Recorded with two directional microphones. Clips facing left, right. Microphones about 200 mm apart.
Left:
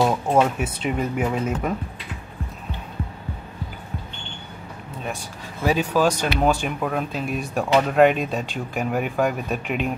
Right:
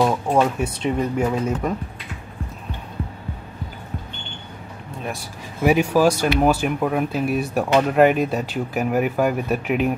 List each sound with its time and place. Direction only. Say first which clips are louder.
0.0 s speech: right 1 dB; 5° left (ahead or behind)
5.6 s speech: right 4 dB; 10° right (ahead or behind)